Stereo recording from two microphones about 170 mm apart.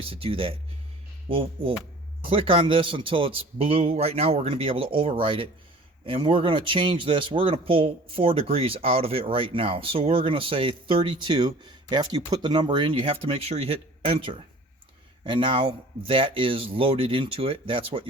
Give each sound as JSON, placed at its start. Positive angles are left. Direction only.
{"t": 0.0, "sound": "a man's voice", "side_deg": -35}